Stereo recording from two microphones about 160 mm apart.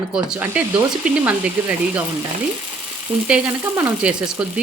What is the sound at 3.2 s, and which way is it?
Speech, 10° right (ahead or behind).